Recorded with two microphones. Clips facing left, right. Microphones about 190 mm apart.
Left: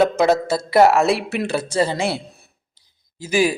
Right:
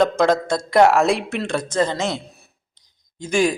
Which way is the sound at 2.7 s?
5° left (ahead or behind).